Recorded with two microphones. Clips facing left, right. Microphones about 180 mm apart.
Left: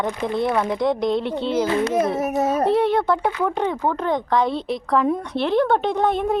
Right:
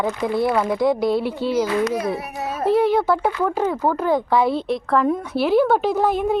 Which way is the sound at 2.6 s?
Centre (ahead or behind).